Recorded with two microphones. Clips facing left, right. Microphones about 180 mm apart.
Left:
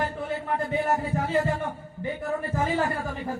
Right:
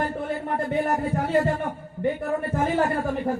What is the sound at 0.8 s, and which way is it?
A man's voice, 60° right (ahead or behind).